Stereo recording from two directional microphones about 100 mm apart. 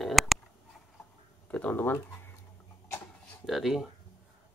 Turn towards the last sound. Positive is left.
turn(degrees=-5)  # may be behind; listen again after turning